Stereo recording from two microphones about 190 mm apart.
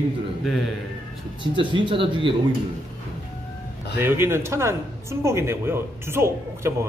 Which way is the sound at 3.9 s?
10° right (ahead or behind).